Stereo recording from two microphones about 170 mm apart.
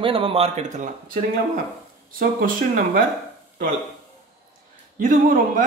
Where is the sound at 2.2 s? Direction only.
55° right (ahead or behind).